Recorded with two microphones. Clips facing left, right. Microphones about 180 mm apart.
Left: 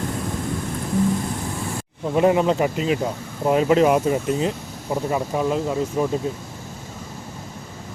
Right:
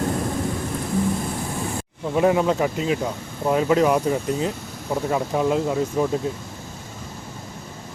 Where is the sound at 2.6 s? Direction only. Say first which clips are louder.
Left 1 dB; 15° left (ahead or behind).